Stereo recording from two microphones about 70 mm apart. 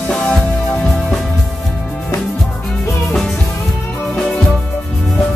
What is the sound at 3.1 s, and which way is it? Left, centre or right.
Music, centre.